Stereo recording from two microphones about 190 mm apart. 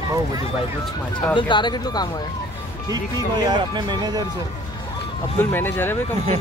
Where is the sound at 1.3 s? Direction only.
25° left (ahead or behind).